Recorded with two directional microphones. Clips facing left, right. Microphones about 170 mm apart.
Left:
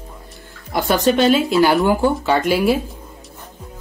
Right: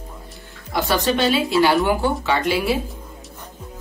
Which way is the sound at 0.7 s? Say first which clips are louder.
Left 4 dB; 50° left (ahead or behind).